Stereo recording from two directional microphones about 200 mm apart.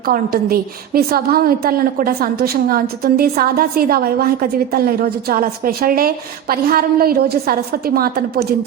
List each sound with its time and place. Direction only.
0.0 s a woman's voice: 50° right (ahead or behind)